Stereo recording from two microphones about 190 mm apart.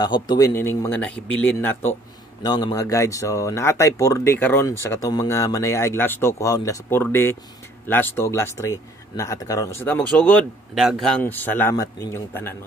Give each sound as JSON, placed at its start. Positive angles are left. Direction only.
{"t": 0.0, "sound": "speech", "side_deg": 20}
{"t": 2.4, "sound": "speech", "side_deg": 20}